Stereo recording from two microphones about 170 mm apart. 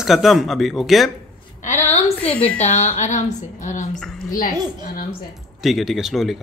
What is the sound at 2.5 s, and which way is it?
A woman's voice, 45° left (ahead or behind).